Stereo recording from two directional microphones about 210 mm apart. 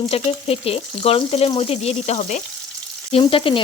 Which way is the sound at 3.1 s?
25° left (ahead or behind).